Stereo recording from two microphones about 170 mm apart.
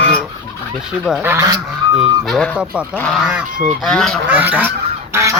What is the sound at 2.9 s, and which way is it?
Goose, 10° left (ahead or behind).